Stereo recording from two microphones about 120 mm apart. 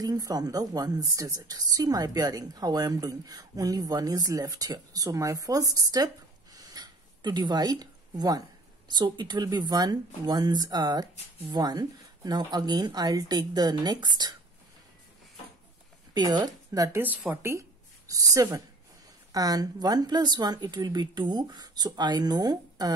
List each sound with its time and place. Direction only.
0.0 s a woman's voice: 30° right (ahead or behind)
16.1 s a woman's voice: 35° right (ahead or behind)